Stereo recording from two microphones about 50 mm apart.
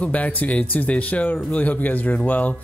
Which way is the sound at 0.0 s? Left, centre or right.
Left.